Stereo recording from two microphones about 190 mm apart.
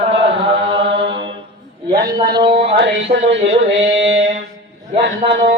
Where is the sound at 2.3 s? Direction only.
25° right (ahead or behind).